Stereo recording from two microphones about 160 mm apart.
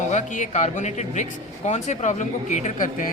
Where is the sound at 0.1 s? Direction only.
45° left (ahead or behind).